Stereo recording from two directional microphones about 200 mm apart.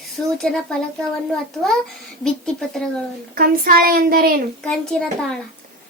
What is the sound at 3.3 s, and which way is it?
Speech, 45° right (ahead or behind).